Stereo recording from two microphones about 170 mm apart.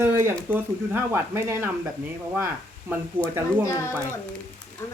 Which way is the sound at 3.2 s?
10° right (ahead or behind).